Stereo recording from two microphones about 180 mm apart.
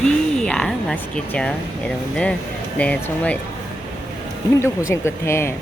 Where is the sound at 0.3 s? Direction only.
5° left (ahead or behind).